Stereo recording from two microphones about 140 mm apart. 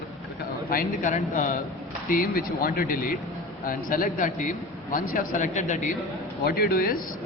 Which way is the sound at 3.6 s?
80° left.